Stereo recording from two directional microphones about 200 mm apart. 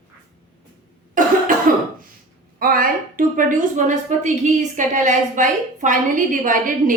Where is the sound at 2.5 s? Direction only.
45° right (ahead or behind).